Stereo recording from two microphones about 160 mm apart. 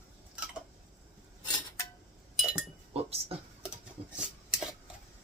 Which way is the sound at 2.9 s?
40° right (ahead or behind).